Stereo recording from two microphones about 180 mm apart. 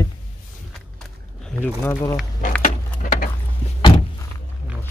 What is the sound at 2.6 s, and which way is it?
Keys jangling, 50° left (ahead or behind).